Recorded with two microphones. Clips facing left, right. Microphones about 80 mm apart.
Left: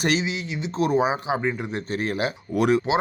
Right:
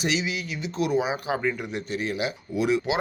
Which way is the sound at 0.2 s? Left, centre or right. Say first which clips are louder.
Left 2 dB; left.